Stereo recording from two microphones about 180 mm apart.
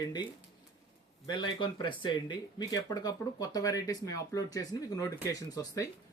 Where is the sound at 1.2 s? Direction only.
25° left (ahead or behind).